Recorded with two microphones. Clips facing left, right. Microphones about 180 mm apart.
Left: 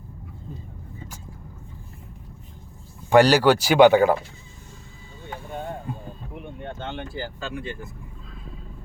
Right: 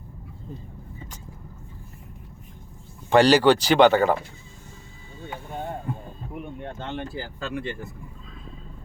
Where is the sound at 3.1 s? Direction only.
10° left (ahead or behind).